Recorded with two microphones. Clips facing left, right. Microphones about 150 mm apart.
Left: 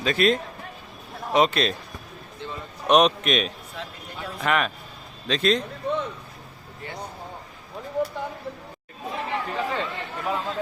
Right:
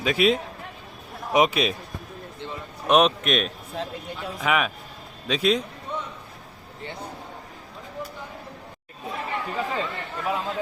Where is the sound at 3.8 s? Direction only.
35° right (ahead or behind).